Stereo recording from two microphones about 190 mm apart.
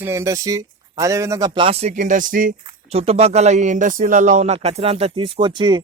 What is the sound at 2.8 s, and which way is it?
Speech, 30° right (ahead or behind).